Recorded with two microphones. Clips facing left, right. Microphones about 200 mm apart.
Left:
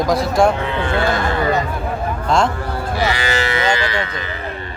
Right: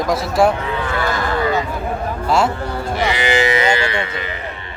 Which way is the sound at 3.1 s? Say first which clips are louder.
Right 3 dB; 20° right (ahead or behind).